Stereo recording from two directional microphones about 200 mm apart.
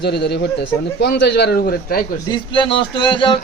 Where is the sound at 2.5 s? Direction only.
25° left (ahead or behind).